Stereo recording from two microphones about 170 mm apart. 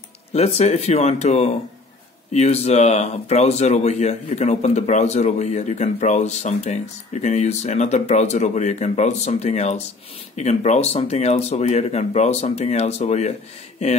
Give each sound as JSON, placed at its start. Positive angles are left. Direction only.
{"t": 0.3, "sound": "speech", "side_deg": 40}